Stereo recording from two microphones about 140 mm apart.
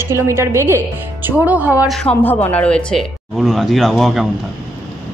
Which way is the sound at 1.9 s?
5° left (ahead or behind).